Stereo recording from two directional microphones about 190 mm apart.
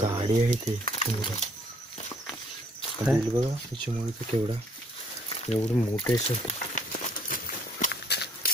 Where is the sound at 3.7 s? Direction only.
25° right (ahead or behind).